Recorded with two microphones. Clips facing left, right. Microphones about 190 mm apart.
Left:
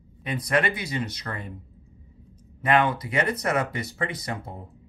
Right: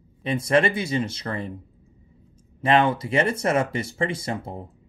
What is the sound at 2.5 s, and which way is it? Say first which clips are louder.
Speech: right 2 dB; 25° right (ahead or behind).